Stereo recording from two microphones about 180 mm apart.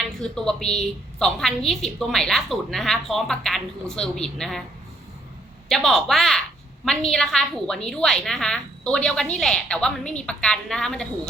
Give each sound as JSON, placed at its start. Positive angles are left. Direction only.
{"t": 0.2, "sound": "a woman's voice", "side_deg": 5}
{"t": 5.6, "sound": "a woman's voice", "side_deg": 0}